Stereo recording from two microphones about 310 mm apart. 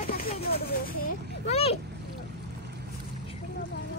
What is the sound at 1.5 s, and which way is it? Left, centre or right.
Speech, centre.